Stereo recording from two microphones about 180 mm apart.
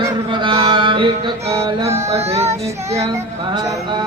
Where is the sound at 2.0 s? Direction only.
35° right (ahead or behind).